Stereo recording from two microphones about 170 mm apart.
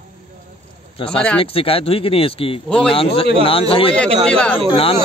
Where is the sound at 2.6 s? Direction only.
5° left (ahead or behind).